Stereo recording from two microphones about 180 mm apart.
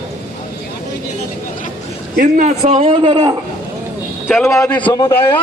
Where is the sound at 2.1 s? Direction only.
45° right (ahead or behind); by 3.3 s 25° right (ahead or behind).